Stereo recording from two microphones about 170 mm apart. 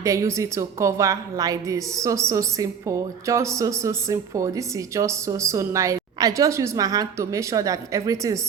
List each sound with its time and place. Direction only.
0.0 s a woman's voice: 20° right (ahead or behind)